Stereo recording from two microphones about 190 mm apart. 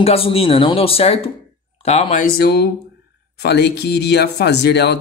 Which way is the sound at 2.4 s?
55° left (ahead or behind).